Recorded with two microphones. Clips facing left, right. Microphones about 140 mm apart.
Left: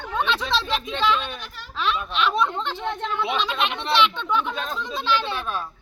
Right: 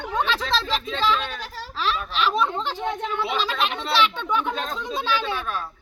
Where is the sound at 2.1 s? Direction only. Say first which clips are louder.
Even; centre (ahead or behind).